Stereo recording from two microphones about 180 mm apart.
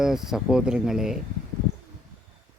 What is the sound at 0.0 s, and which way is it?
A man's voice, centre (ahead or behind).